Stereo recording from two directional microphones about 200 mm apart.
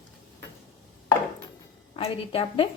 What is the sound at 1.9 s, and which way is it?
Speech, 30° left (ahead or behind).